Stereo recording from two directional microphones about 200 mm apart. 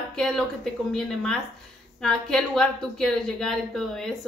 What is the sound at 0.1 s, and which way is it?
A woman's voice, centre (ahead or behind).